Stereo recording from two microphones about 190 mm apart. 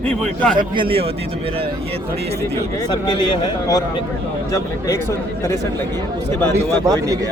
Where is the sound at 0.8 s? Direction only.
30° right (ahead or behind).